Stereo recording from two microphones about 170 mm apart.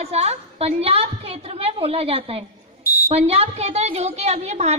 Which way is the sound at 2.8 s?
60° left (ahead or behind).